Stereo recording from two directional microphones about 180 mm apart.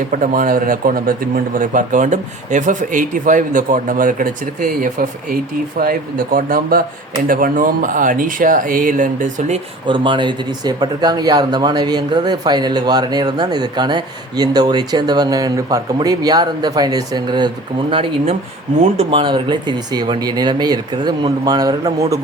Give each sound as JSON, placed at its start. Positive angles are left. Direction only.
{"t": 0.1, "sound": "speech", "side_deg": -50}
{"t": 9.8, "sound": "speech", "side_deg": -25}